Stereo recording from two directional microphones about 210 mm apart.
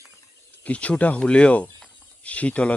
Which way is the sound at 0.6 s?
5° left (ahead or behind).